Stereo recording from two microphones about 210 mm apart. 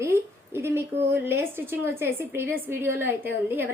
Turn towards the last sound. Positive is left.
turn(degrees=-10)  # may be behind; listen again after turning